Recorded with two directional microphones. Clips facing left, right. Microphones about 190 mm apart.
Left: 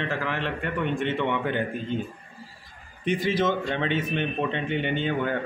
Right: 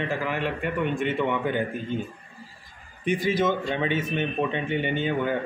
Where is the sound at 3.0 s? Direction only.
50° right (ahead or behind).